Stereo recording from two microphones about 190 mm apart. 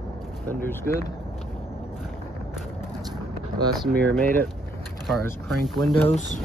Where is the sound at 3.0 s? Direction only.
20° right (ahead or behind).